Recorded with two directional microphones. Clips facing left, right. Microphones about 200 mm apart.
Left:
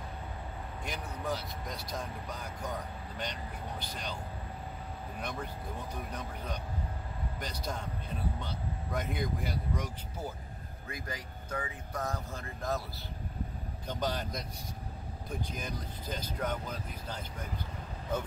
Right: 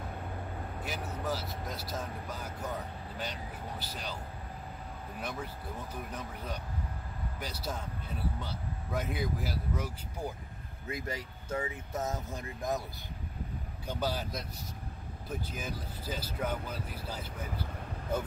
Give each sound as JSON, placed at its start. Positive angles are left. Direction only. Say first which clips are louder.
{"t": 0.8, "sound": "speech", "louder": "even", "side_deg": -5}
{"t": 3.8, "sound": "speech", "louder": "even", "side_deg": -5}
{"t": 5.2, "sound": "speech", "louder": "even", "side_deg": -5}
{"t": 10.9, "sound": "speech", "louder": "right 4 dB", "side_deg": -25}
{"t": 13.8, "sound": "speech", "louder": "even", "side_deg": -5}